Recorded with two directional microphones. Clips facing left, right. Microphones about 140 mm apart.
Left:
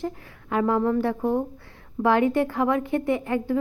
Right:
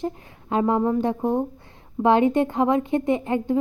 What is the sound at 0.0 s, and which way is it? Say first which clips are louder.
Speech: right 2 dB; 20° right (ahead or behind).